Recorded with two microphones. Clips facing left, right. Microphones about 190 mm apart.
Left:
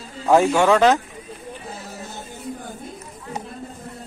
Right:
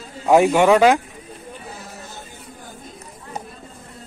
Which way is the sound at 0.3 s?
15° right (ahead or behind).